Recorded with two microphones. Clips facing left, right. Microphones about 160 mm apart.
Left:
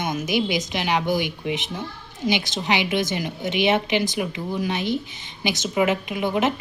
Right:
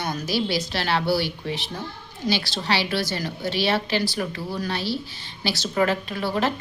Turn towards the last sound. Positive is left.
turn(degrees=20)  # may be behind; listen again after turning